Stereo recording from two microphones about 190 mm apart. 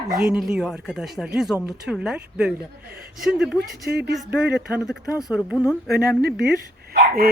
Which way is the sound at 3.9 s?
60° right (ahead or behind).